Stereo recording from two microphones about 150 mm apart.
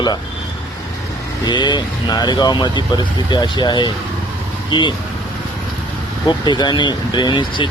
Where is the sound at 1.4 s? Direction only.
30° left (ahead or behind).